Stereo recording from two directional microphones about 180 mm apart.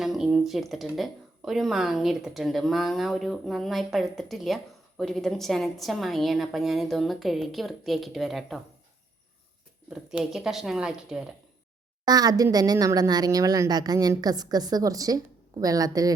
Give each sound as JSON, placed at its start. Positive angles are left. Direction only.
{"t": 0.0, "sound": "speech", "side_deg": 0}
{"t": 9.9, "sound": "speech", "side_deg": -5}
{"t": 12.0, "sound": "a woman's voice", "side_deg": -20}